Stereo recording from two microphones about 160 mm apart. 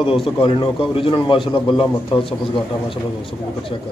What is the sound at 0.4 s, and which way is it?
A man's voice, 30° left (ahead or behind).